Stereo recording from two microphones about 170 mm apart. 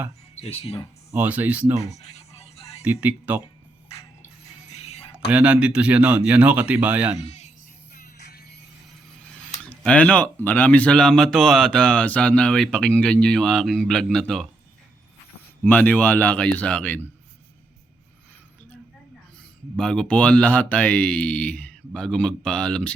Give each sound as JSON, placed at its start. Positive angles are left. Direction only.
{"t": 0.3, "sound": "speech", "side_deg": 40}
{"t": 1.1, "sound": "speech", "side_deg": -10}
{"t": 1.9, "sound": "music", "side_deg": 40}
{"t": 2.8, "sound": "speech", "side_deg": -10}
{"t": 4.7, "sound": "music", "side_deg": 40}
{"t": 5.3, "sound": "speech", "side_deg": -10}
{"t": 7.9, "sound": "music", "side_deg": 65}
{"t": 9.3, "sound": "speech", "side_deg": 5}
{"t": 15.6, "sound": "speech", "side_deg": 10}
{"t": 19.7, "sound": "speech", "side_deg": 5}